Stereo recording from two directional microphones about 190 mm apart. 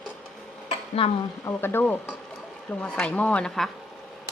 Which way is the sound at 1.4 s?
10° left (ahead or behind).